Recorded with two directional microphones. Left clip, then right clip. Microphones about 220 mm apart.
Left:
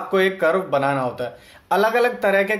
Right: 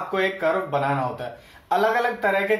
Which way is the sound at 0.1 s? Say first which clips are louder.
Left 5 dB; 50° left (ahead or behind).